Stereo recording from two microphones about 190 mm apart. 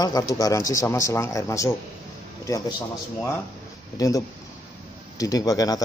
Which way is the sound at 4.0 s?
15° left (ahead or behind).